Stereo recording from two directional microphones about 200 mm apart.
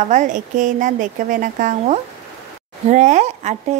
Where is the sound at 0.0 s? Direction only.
40° right (ahead or behind).